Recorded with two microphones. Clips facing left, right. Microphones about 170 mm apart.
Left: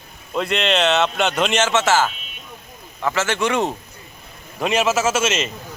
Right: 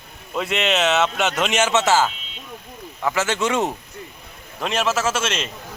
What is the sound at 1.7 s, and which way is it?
Speech, 15° right (ahead or behind).